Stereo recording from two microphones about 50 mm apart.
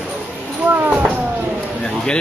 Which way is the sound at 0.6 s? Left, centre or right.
Right.